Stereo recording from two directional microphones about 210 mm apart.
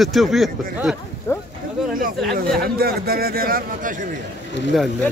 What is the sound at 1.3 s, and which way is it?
Speech, 15° left (ahead or behind).